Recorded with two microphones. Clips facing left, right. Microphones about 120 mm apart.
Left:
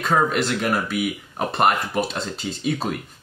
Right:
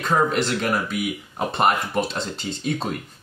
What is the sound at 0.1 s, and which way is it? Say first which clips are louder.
Speech: even; centre (ahead or behind).